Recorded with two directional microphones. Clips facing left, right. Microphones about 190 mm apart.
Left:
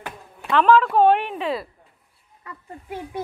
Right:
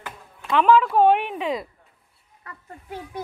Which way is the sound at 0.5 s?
10° right (ahead or behind).